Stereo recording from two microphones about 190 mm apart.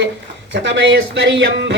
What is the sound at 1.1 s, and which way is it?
Speech, 70° right (ahead or behind).